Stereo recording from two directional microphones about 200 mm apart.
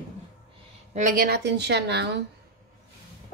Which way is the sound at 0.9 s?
45° right (ahead or behind).